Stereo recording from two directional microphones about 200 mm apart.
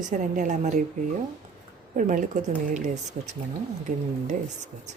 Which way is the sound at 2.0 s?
40° right (ahead or behind).